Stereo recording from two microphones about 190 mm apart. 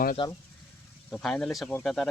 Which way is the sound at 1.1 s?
5° left (ahead or behind).